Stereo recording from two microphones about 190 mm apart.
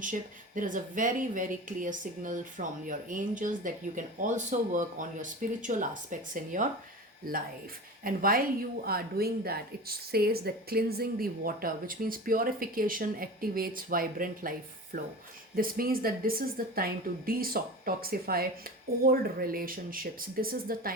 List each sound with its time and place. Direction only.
0.0 s speech: 45° right (ahead or behind)